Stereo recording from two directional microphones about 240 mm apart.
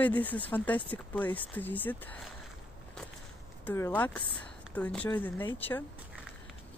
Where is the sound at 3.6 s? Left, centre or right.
Centre.